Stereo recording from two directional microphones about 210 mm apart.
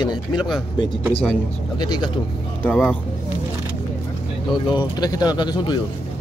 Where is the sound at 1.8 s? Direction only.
20° left (ahead or behind).